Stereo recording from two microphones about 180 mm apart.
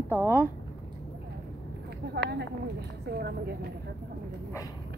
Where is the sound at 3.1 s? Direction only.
65° right (ahead or behind).